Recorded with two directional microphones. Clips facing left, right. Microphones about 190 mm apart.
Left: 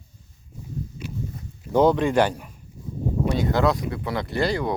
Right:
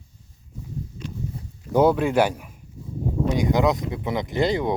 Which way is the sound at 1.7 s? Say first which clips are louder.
Even; 10° right (ahead or behind).